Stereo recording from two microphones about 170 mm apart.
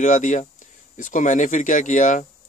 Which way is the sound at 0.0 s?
45° left (ahead or behind).